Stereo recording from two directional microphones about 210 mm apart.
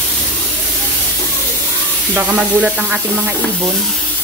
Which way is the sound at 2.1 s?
10° right (ahead or behind).